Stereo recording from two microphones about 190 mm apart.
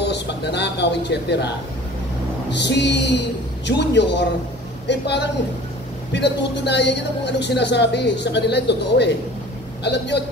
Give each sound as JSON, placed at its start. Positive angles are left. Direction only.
{"t": 0.0, "sound": "speech", "side_deg": 65}
{"t": 2.5, "sound": "speech", "side_deg": 65}